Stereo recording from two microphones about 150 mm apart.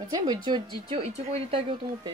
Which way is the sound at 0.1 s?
25° right (ahead or behind).